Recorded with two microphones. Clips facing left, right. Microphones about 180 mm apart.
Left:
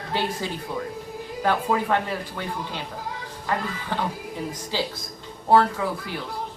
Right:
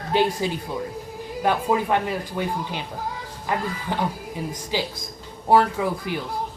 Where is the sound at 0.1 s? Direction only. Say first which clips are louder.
Right 7 dB; 15° right (ahead or behind).